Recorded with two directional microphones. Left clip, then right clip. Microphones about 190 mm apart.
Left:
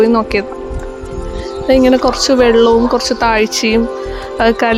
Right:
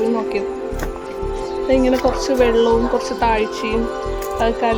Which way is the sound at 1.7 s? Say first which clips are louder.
Left 6 dB; 25° left (ahead or behind).